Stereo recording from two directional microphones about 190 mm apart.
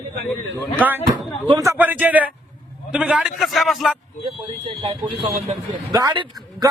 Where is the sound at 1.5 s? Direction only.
15° right (ahead or behind).